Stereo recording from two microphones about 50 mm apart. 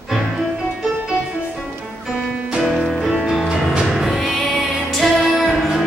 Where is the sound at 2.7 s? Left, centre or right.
Centre.